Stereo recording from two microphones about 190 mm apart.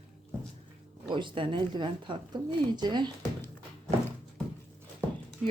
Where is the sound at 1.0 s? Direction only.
25° right (ahead or behind).